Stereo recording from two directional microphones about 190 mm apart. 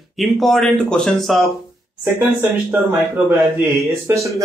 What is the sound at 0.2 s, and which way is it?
A man's voice, centre (ahead or behind).